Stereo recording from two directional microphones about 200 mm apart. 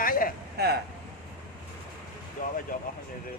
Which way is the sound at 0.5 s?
55° right (ahead or behind).